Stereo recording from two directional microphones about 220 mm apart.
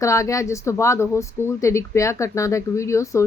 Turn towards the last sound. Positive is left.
turn(degrees=15)  # may be behind; listen again after turning